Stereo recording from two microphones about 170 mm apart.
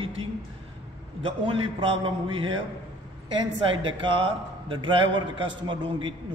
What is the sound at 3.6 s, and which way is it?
A man's voice, 30° right (ahead or behind).